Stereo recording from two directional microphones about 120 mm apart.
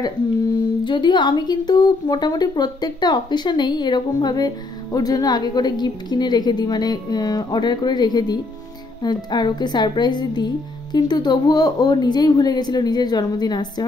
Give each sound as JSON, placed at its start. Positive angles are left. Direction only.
{"t": 0.8, "sound": "a woman's voice", "side_deg": 40}